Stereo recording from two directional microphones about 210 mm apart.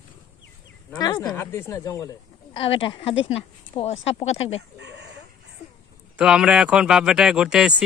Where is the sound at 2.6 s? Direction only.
25° left (ahead or behind).